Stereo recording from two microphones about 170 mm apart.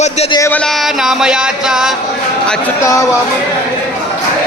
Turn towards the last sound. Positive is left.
turn(degrees=15)  # may be behind; listen again after turning